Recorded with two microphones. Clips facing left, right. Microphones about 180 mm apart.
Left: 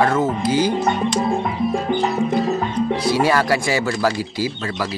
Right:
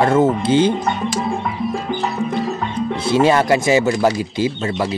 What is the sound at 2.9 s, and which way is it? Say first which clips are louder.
Speech: right 4 dB; 25° right (ahead or behind).